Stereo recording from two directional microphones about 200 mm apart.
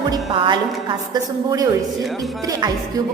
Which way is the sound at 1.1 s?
15° right (ahead or behind).